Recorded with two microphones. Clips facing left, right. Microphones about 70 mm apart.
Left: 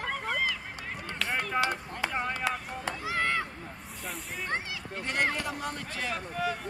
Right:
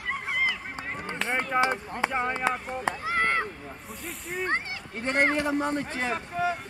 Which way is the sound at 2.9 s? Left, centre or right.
Right.